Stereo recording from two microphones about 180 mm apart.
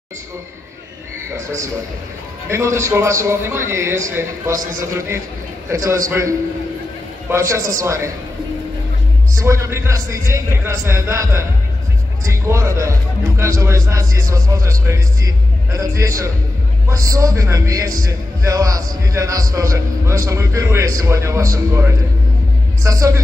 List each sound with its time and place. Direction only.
2.5 s speech: 15° right (ahead or behind)
9.4 s speech: 15° right (ahead or behind)